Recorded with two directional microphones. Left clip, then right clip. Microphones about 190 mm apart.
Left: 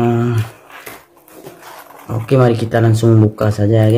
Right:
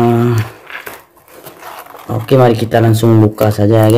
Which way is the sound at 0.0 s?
20° right (ahead or behind).